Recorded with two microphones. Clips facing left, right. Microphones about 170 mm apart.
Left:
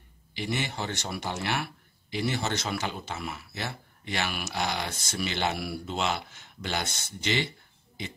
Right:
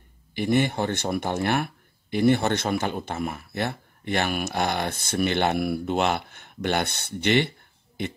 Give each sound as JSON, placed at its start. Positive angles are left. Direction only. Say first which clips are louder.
{"t": 0.3, "sound": "speech", "louder": "right 10 dB", "side_deg": -50}